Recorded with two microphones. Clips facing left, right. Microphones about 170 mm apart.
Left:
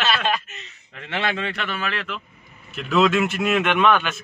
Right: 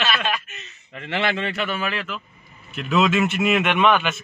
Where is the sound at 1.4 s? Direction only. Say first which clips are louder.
Right 2 dB; 5° right (ahead or behind).